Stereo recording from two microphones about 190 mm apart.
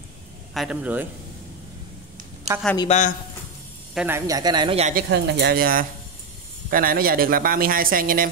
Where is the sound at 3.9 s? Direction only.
5° right (ahead or behind).